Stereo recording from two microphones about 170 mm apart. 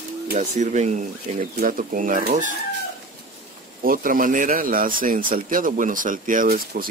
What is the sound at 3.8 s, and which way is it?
Speech, 55° right (ahead or behind).